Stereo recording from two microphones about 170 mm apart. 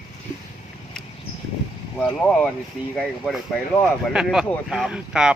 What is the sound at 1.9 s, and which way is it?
Speech, 5° left (ahead or behind).